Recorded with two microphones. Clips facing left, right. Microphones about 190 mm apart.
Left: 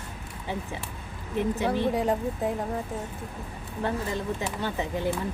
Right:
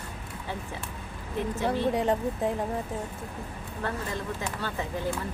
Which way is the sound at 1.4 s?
15° left (ahead or behind).